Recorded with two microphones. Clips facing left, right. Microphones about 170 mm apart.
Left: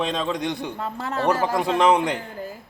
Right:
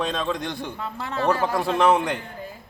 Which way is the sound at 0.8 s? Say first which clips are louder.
Right 1 dB; 40° left (ahead or behind).